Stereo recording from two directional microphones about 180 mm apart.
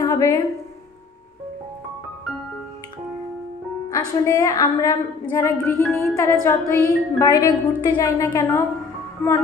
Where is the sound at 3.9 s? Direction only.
15° left (ahead or behind).